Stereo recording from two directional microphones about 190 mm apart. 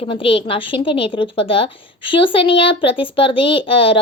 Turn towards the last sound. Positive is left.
turn(degrees=30)  # may be behind; listen again after turning